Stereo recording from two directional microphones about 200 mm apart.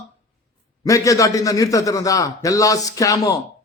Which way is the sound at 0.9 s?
15° left (ahead or behind).